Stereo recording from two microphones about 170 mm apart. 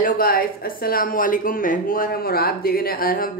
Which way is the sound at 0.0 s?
60° left (ahead or behind).